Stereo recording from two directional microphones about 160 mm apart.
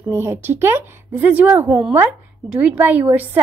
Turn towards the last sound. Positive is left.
turn(degrees=-10)  # may be behind; listen again after turning